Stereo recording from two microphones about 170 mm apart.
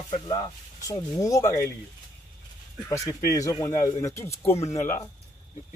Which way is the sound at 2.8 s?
20° left (ahead or behind).